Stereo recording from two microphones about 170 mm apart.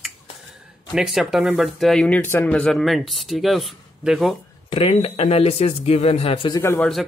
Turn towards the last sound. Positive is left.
turn(degrees=10)  # may be behind; listen again after turning